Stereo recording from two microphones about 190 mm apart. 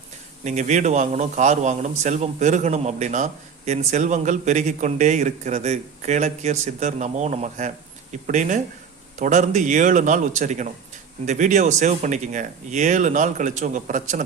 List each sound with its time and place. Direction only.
0.4 s speech: 40° right (ahead or behind)